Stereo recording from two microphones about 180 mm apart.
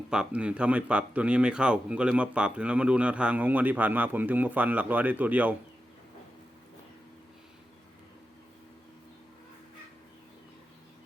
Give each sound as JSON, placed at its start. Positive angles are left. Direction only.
{"t": 0.1, "sound": "speech", "side_deg": -5}